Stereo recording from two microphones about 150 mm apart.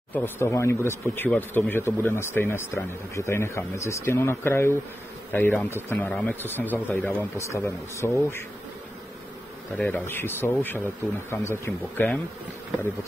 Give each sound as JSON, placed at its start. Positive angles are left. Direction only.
{"t": 0.1, "sound": "speech", "side_deg": 15}
{"t": 9.8, "sound": "speech", "side_deg": 10}